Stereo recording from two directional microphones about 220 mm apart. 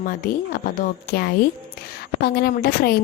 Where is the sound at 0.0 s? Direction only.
40° left (ahead or behind).